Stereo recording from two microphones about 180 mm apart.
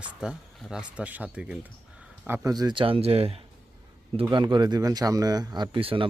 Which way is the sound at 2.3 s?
20° right (ahead or behind).